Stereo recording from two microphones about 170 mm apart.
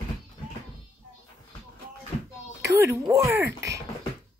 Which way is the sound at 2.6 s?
15° right (ahead or behind).